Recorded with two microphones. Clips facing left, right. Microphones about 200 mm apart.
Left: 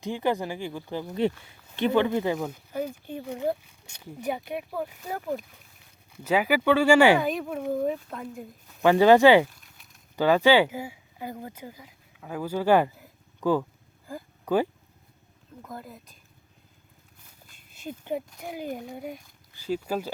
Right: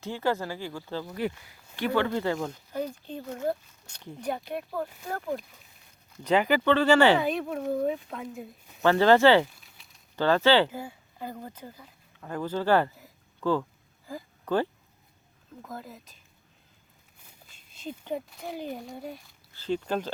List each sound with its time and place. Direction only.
0.0 s speech: 15° left (ahead or behind)
7.2 s speech: centre (ahead or behind)
8.8 s speech: 15° left (ahead or behind)
15.6 s speech: centre (ahead or behind)
17.7 s a sound: 10° left (ahead or behind)
18.3 s speech: 5° left (ahead or behind)